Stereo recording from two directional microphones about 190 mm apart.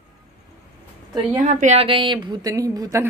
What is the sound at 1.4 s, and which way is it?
A woman's voice, 40° right (ahead or behind).